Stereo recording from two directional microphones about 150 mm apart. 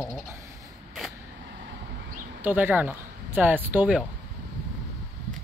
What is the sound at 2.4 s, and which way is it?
Speech, 10° right (ahead or behind).